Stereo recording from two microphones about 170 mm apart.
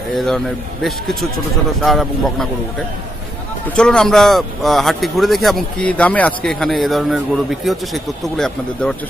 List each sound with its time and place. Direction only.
1.8 s speech: centre (ahead or behind)
3.7 s speech: 5° left (ahead or behind)